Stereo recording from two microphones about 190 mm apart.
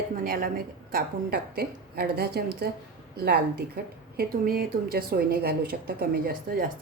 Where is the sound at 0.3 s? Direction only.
50° right (ahead or behind).